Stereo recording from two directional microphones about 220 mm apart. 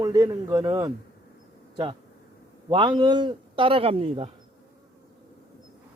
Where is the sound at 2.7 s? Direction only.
20° right (ahead or behind).